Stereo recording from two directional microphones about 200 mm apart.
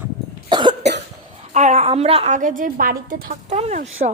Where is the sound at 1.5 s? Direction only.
35° right (ahead or behind).